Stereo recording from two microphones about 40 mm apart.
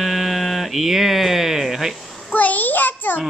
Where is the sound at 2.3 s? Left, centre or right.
Left.